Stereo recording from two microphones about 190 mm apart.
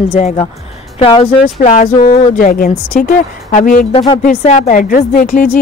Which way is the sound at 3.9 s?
30° left (ahead or behind).